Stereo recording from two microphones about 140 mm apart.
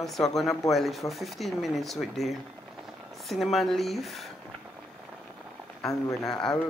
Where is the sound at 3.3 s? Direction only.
Centre (ahead or behind).